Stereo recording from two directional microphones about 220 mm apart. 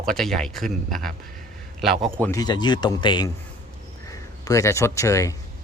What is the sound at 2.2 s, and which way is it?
Speech, 15° left (ahead or behind).